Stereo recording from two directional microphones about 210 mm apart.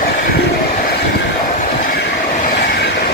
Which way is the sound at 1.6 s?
40° left (ahead or behind).